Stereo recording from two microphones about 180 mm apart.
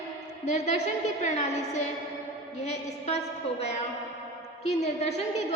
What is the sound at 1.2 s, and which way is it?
Speech, 40° left (ahead or behind).